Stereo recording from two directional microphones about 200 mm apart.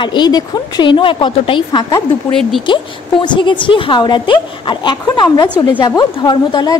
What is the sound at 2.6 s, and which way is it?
A woman's voice, 25° left (ahead or behind).